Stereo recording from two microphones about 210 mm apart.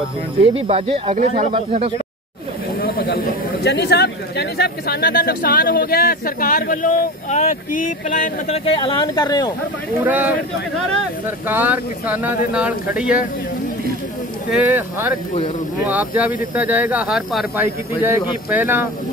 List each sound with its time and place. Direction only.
0.4 s speech: 25° right (ahead or behind)
2.8 s a sound: 45° left (ahead or behind)
3.6 s speech: 55° left (ahead or behind)
8.6 s speech: 25° left (ahead or behind)
10.0 s speech: 10° right (ahead or behind)
14.5 s speech: 10° right (ahead or behind)